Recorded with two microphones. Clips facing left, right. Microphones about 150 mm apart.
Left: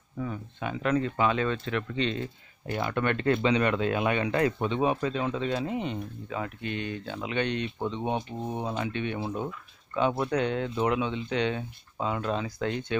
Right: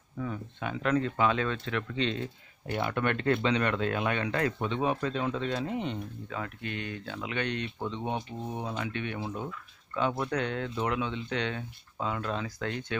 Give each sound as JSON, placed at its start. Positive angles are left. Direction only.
{"t": 0.2, "sound": "speech", "side_deg": 5}
{"t": 6.4, "sound": "speech", "side_deg": 20}